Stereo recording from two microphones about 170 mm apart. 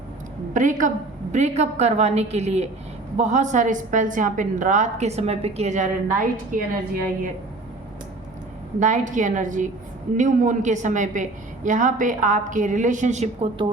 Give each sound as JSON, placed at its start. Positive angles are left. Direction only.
{"t": 0.5, "sound": "a woman's voice", "side_deg": -50}
{"t": 8.8, "sound": "a woman's voice", "side_deg": -45}